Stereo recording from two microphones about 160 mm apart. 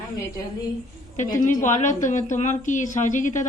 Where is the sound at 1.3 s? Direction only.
50° left (ahead or behind).